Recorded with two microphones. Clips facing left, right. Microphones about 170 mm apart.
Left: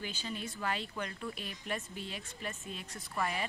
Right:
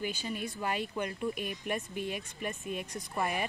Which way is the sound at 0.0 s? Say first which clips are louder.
Right 5 dB; 15° right (ahead or behind).